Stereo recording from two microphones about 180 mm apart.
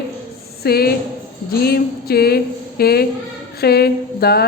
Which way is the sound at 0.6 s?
60° left (ahead or behind).